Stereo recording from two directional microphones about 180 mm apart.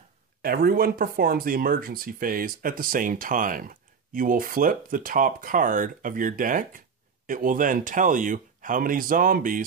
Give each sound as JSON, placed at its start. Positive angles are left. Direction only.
{"t": 0.4, "sound": "speech", "side_deg": -55}